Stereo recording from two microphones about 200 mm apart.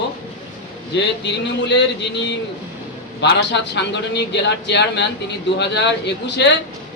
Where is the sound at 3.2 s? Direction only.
60° left (ahead or behind).